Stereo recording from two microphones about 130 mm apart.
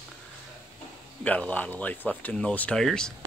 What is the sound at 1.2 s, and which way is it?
Speech, 10° left (ahead or behind).